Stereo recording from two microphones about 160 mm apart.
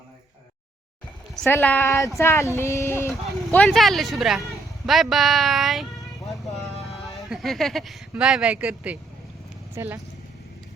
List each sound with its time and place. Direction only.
1.4 s speech: 15° left (ahead or behind)
3.7 s speech: centre (ahead or behind)
6.4 s a sound: centre (ahead or behind)
9.7 s speech: 15° right (ahead or behind)